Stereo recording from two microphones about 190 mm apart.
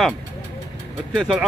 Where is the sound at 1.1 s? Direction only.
Centre (ahead or behind).